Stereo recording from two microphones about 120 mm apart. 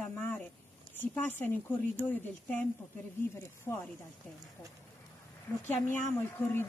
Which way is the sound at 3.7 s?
20° left (ahead or behind).